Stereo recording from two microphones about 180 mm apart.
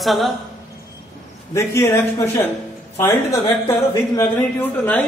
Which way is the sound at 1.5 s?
15° left (ahead or behind).